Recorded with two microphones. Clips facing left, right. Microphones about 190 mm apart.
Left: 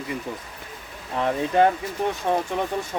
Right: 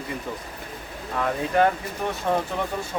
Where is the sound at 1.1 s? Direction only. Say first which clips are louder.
Left 2 dB; 20° left (ahead or behind).